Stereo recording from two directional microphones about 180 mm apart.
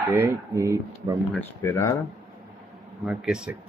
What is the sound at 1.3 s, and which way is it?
Speech, 10° left (ahead or behind).